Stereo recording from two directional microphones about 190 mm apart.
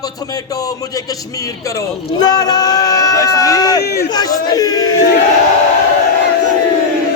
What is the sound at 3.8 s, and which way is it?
Speech, 60° left (ahead or behind).